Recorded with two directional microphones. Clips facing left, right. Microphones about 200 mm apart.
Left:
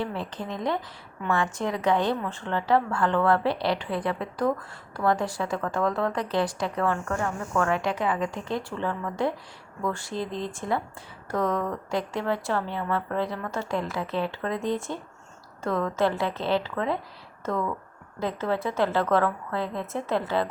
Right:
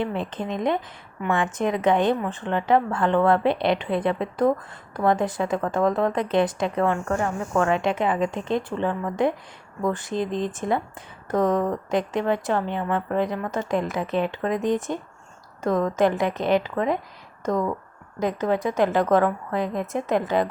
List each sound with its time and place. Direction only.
0.0 s a woman's voice: 20° right (ahead or behind)